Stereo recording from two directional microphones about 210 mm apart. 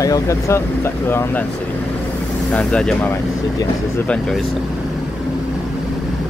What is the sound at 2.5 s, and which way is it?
Speech, 5° left (ahead or behind).